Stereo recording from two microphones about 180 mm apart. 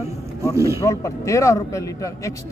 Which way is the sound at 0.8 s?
15° left (ahead or behind).